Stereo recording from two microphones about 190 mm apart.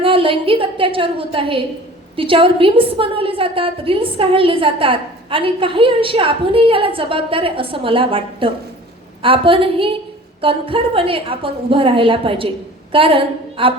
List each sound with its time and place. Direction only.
0.0 s a woman's voice: 30° right (ahead or behind)